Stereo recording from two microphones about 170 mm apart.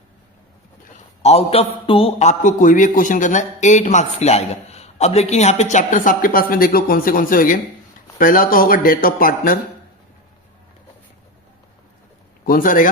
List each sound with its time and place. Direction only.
1.2 s a man's voice: 35° left (ahead or behind); by 9.6 s 55° left (ahead or behind)
12.5 s a man's voice: 55° left (ahead or behind)